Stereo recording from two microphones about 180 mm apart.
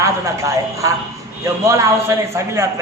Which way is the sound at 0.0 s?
15° right (ahead or behind).